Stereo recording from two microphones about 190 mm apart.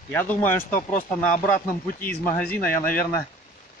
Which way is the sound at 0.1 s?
10° left (ahead or behind).